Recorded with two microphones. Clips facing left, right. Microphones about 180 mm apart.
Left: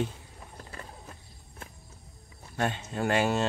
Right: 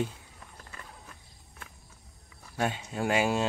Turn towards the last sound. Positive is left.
turn(degrees=-5)  # may be behind; listen again after turning